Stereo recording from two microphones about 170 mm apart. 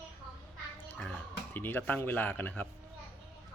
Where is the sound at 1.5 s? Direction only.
10° left (ahead or behind).